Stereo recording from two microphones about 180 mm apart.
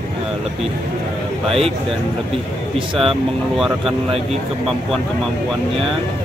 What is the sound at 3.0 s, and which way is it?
Speech, centre (ahead or behind).